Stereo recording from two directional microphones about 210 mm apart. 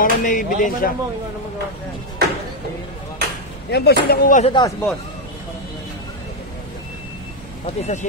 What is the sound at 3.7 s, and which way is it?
Speech, 50° left (ahead or behind).